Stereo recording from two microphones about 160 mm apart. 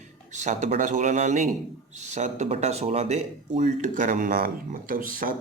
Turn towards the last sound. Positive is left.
turn(degrees=-60)  # may be behind; listen again after turning